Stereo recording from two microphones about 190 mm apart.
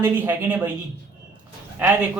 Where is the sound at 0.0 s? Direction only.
10° right (ahead or behind).